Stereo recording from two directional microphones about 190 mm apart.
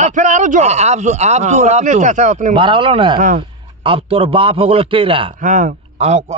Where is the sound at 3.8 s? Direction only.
30° right (ahead or behind).